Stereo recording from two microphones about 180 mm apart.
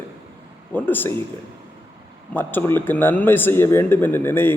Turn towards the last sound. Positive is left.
turn(degrees=10)  # may be behind; listen again after turning